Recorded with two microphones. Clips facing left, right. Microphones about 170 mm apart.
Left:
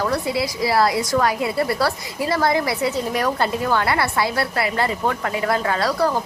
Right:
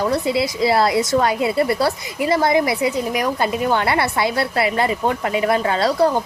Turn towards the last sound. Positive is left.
turn(degrees=-25)  # may be behind; listen again after turning